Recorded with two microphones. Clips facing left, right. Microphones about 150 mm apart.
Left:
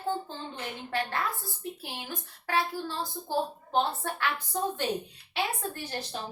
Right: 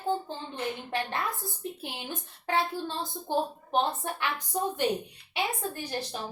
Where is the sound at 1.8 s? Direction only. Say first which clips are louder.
Right 1 dB; 20° right (ahead or behind).